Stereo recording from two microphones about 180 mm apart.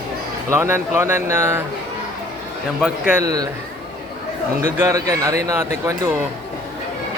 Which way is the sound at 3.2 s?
20° right (ahead or behind).